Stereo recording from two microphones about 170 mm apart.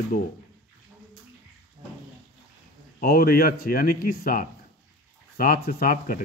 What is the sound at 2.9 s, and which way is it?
Speech, 60° left (ahead or behind).